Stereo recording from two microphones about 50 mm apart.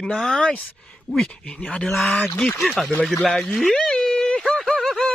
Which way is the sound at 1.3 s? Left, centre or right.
Left.